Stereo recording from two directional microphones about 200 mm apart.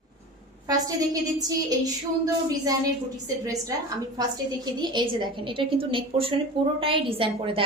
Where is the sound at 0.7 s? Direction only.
20° right (ahead or behind).